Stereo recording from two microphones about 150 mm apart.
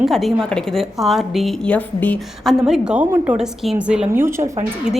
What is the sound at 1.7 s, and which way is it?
A woman's voice, 10° left (ahead or behind).